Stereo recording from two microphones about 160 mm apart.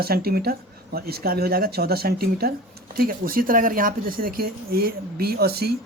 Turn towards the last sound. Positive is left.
turn(degrees=-80)